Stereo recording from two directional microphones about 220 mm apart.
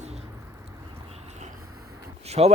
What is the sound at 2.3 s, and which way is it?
Speech, 30° right (ahead or behind).